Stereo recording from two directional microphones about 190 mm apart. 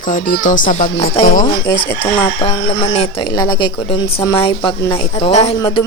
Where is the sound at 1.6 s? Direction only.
20° left (ahead or behind).